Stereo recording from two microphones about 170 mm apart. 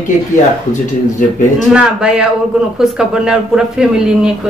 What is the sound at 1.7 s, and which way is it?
Speech, 5° right (ahead or behind).